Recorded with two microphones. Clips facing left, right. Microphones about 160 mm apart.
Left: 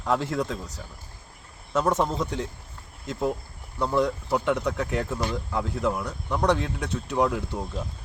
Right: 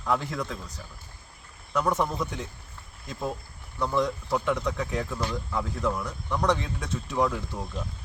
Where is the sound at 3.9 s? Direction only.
10° left (ahead or behind).